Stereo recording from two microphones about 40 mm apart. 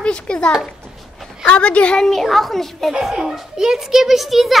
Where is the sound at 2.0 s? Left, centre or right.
Centre.